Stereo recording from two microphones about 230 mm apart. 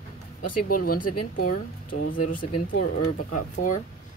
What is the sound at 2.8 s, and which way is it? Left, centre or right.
Speech, left.